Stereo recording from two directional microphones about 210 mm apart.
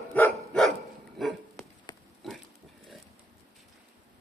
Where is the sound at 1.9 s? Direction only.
20° left (ahead or behind).